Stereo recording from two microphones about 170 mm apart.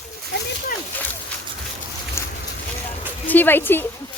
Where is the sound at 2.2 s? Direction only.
15° left (ahead or behind).